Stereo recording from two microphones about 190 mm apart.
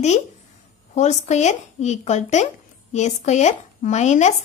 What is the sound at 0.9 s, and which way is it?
Speech, 40° left (ahead or behind).